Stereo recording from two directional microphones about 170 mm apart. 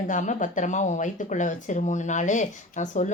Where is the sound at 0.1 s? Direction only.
50° left (ahead or behind).